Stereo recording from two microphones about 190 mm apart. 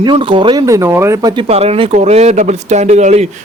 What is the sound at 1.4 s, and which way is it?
A man's voice, 35° right (ahead or behind).